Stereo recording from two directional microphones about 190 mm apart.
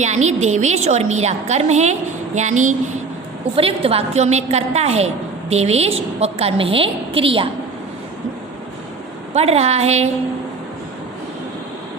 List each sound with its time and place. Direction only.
0.0 s a woman's voice: 35° right (ahead or behind)
3.5 s a woman's voice: 30° right (ahead or behind)
9.3 s a woman's voice: 35° right (ahead or behind)